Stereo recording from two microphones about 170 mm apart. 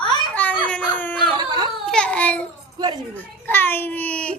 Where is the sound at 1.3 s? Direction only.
25° right (ahead or behind).